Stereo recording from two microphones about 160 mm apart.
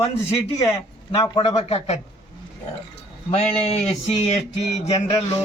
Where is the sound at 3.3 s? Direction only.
40° left (ahead or behind).